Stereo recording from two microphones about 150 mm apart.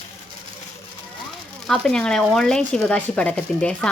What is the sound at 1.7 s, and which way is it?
Speech, 5° left (ahead or behind).